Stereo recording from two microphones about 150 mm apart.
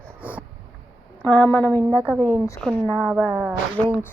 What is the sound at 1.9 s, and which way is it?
Speech, 10° right (ahead or behind).